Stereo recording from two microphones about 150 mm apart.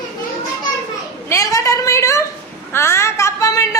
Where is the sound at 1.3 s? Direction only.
20° left (ahead or behind).